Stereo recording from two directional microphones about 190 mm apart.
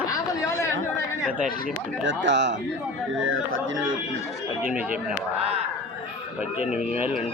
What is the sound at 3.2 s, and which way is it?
Speech, 90° right.